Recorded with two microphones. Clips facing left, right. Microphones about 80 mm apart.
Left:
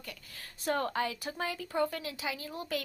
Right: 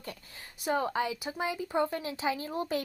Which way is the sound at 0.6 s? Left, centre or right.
Centre.